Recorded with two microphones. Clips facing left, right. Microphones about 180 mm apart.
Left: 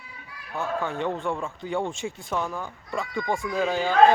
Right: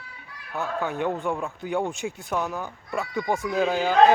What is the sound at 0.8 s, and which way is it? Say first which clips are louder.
Speech: right 4 dB; 5° right (ahead or behind).